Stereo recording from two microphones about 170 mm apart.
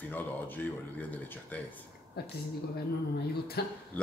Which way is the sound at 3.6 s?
70° left (ahead or behind).